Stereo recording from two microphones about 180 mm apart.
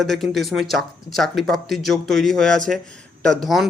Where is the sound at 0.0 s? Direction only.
Centre (ahead or behind).